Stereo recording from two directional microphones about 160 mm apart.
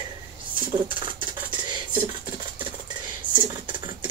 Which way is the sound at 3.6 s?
30° right (ahead or behind).